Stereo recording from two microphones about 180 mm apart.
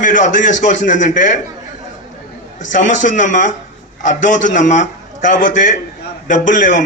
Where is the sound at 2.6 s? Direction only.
45° left (ahead or behind).